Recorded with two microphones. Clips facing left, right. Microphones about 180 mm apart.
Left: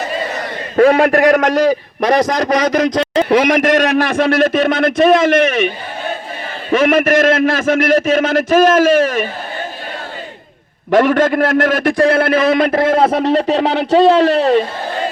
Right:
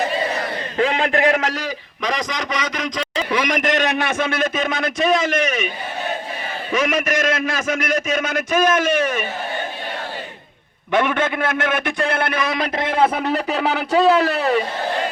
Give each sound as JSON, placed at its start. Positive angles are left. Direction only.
{"t": 0.8, "sound": "speech", "side_deg": 40}
{"t": 1.4, "sound": "a man's voice", "side_deg": 65}
{"t": 6.7, "sound": "a man's voice", "side_deg": 55}
{"t": 10.9, "sound": "a man's voice", "side_deg": 45}
{"t": 13.0, "sound": "speech", "side_deg": 30}